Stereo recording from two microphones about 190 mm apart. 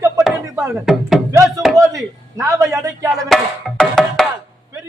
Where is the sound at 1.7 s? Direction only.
15° right (ahead or behind).